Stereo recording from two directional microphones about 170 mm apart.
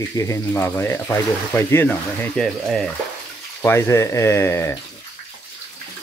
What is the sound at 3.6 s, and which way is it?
Speech, 15° left (ahead or behind).